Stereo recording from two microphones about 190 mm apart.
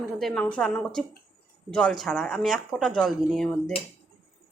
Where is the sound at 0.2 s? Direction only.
5° left (ahead or behind).